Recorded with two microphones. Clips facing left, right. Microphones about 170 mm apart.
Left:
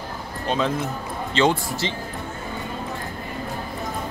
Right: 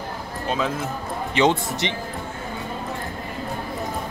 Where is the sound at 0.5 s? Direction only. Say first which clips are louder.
Left 2 dB; 5° right (ahead or behind).